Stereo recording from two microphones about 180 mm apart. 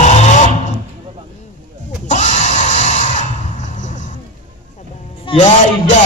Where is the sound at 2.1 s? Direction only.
45° left (ahead or behind).